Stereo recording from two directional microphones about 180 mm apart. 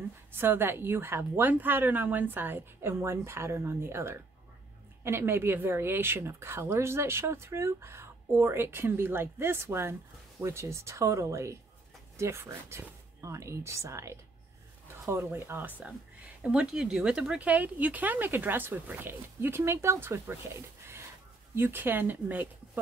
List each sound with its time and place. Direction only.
0.4 s speech: 10° right (ahead or behind)